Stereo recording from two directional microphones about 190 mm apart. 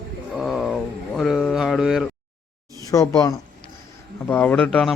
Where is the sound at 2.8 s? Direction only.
20° left (ahead or behind).